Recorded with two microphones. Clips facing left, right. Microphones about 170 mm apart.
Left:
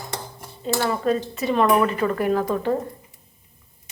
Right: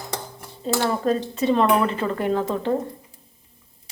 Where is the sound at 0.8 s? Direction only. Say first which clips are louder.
Even; 30° right (ahead or behind).